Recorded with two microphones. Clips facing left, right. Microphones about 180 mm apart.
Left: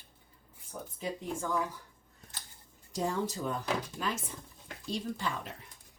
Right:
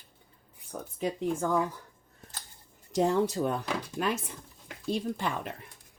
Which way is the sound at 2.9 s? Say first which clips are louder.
Right 7 dB; 70° right (ahead or behind).